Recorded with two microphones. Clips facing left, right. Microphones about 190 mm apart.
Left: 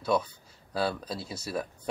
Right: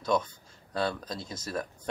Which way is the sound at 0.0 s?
5° left (ahead or behind).